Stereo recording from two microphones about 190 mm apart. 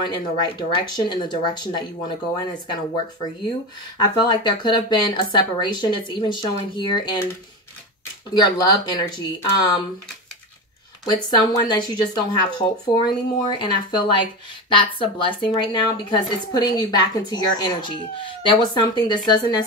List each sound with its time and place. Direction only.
0.0 s a woman's voice: 25° left (ahead or behind)
8.4 s a woman's voice: 25° left (ahead or behind)
11.2 s a woman's voice: 20° left (ahead or behind)
14.7 s a woman's voice: 25° left (ahead or behind)